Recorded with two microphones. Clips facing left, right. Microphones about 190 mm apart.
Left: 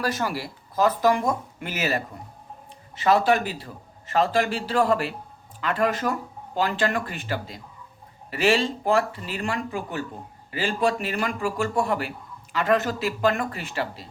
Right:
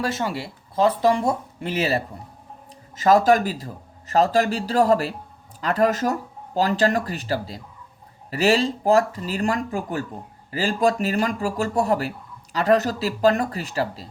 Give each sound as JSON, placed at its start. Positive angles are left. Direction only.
{"t": 0.0, "sound": "speech", "side_deg": -25}
{"t": 2.9, "sound": "speech", "side_deg": -40}